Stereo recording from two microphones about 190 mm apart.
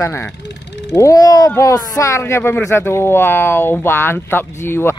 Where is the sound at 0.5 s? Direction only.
65° left (ahead or behind).